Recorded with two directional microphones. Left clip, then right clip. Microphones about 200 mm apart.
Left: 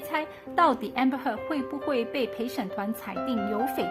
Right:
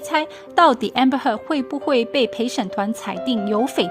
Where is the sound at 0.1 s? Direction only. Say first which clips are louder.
Right 10 dB; 40° right (ahead or behind).